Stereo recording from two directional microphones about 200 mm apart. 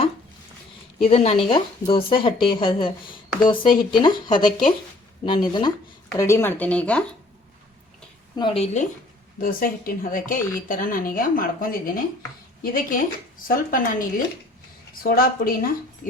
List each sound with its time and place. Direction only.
0.9 s a woman's voice: 30° left (ahead or behind); by 7.0 s 5° left (ahead or behind)
8.4 s speech: 25° left (ahead or behind)
9.4 s a woman's voice: 45° left (ahead or behind)
15.0 s a woman's voice: 45° left (ahead or behind)